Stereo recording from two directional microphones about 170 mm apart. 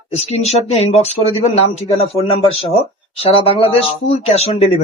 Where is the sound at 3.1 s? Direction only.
35° left (ahead or behind).